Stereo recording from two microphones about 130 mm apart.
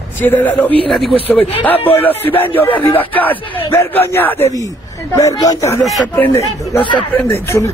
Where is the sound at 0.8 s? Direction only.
Centre (ahead or behind).